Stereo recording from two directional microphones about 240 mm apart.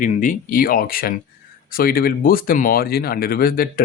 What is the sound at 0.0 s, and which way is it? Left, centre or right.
Speech, left.